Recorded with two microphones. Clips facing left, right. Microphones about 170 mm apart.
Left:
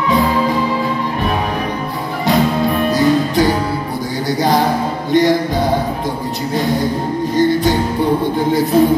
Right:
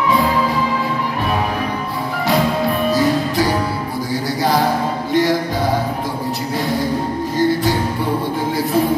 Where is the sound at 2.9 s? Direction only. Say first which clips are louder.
Left 5 dB; 20° left (ahead or behind).